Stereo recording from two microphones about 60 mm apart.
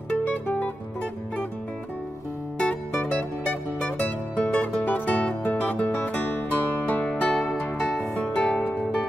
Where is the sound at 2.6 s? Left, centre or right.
Centre.